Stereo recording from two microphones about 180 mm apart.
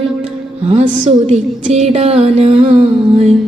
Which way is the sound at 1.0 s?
40° right (ahead or behind).